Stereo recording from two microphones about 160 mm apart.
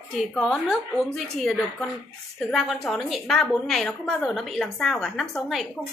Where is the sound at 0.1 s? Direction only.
Centre (ahead or behind).